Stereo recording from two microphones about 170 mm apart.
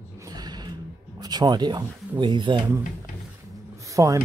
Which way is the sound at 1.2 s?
25° right (ahead or behind).